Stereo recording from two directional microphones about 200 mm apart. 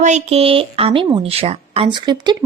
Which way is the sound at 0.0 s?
35° right (ahead or behind).